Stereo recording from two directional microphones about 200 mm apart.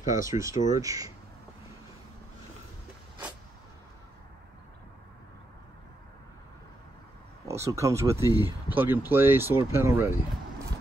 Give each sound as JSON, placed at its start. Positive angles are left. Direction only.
{"t": 0.1, "sound": "speech", "side_deg": -15}
{"t": 7.4, "sound": "speech", "side_deg": -15}